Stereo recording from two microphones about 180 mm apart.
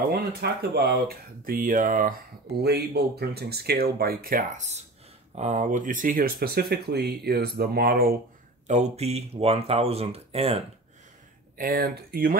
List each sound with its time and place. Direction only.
0.1 s speech: 60° right (ahead or behind)
2.6 s speech: 65° right (ahead or behind)
8.6 s speech: 40° right (ahead or behind)
11.5 s speech: 55° right (ahead or behind)